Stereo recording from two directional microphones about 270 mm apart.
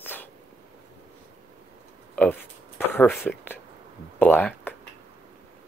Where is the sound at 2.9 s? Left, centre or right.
Centre.